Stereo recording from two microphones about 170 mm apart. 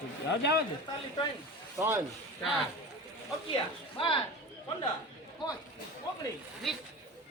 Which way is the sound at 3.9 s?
30° left (ahead or behind).